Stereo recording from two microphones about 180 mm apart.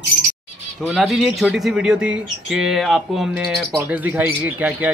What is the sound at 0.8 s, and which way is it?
Speech, centre (ahead or behind).